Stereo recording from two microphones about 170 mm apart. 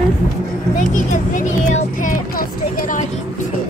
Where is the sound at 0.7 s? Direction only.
50° left (ahead or behind).